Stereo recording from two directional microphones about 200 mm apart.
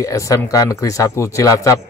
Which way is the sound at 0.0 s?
15° left (ahead or behind).